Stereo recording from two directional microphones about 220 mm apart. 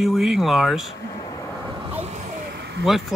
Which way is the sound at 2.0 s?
30° right (ahead or behind).